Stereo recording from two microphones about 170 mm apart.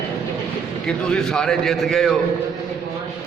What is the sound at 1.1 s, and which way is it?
A man's voice, 5° left (ahead or behind).